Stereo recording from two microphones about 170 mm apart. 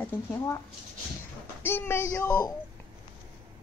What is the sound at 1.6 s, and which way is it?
Music, 15° left (ahead or behind).